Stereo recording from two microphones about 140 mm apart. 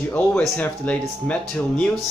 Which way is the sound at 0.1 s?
5° left (ahead or behind).